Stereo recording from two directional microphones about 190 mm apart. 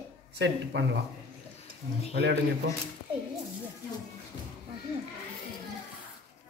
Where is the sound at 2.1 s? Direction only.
65° right (ahead or behind).